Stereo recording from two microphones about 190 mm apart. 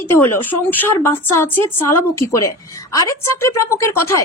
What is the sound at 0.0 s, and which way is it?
A woman's voice, 15° left (ahead or behind).